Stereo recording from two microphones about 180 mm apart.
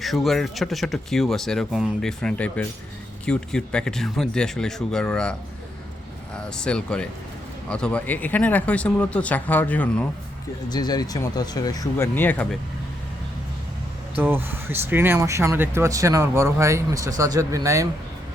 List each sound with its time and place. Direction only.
0.0 s speech: centre (ahead or behind)
10.7 s speech: 20° left (ahead or behind)
14.2 s speech: 10° right (ahead or behind)